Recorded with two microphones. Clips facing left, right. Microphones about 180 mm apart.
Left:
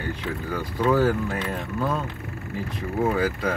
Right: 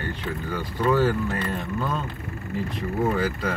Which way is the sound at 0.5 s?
5° left (ahead or behind).